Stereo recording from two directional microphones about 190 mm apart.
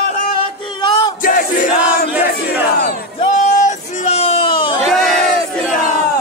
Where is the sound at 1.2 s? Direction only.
45° left (ahead or behind).